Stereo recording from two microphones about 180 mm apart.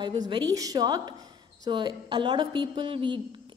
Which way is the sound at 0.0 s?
25° right (ahead or behind).